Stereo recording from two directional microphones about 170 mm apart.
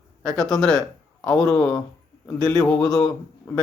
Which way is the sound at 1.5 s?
15° left (ahead or behind).